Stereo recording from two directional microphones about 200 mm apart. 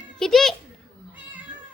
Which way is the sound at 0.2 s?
Centre (ahead or behind).